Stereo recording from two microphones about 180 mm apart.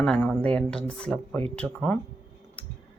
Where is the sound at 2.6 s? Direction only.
10° left (ahead or behind).